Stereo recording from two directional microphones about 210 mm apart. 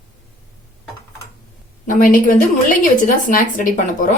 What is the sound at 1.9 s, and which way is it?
A woman's voice, 40° left (ahead or behind).